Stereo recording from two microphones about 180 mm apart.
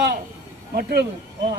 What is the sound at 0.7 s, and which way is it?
Speech, 65° right (ahead or behind).